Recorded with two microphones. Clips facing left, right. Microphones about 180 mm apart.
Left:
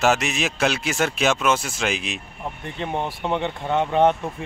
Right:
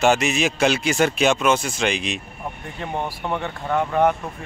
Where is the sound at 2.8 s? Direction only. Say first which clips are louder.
Left 1 dB; 20° left (ahead or behind).